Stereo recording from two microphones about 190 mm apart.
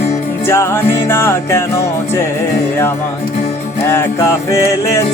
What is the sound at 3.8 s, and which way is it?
Music, 10° left (ahead or behind).